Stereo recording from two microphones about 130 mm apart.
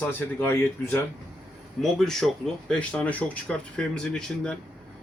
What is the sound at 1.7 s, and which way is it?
Speech, 5° left (ahead or behind).